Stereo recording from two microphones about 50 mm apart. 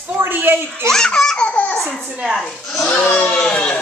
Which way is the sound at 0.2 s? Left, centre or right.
Right.